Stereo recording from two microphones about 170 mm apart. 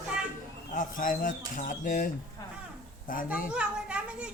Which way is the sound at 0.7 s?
50° left (ahead or behind).